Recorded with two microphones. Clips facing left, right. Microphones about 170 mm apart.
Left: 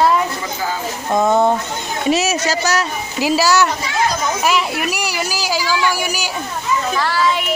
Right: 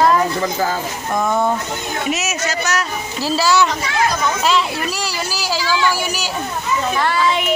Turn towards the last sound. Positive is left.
turn(degrees=10)  # may be behind; listen again after turning